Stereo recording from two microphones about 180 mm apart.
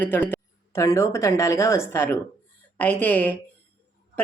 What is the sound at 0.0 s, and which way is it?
Speech, 10° left (ahead or behind).